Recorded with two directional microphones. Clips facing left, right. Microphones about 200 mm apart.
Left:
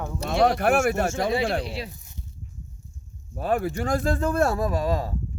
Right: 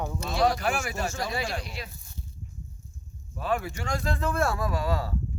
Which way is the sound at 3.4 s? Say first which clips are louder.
Left 5 dB; 40° left (ahead or behind).